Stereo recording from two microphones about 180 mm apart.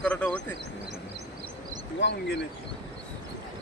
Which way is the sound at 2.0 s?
80° left.